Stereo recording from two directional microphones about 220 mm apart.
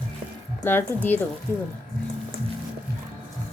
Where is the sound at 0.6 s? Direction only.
10° left (ahead or behind).